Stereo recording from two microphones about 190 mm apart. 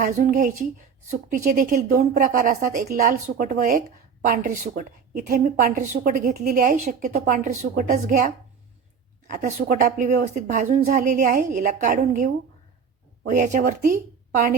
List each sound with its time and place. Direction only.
0.0 s speech: 40° right (ahead or behind)